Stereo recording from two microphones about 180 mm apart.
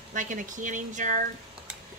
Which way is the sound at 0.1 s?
45° right (ahead or behind).